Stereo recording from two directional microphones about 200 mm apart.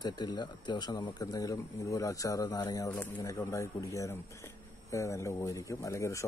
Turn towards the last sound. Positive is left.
turn(degrees=15)  # may be behind; listen again after turning